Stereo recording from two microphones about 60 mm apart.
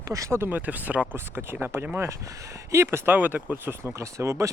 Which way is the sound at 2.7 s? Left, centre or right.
Right.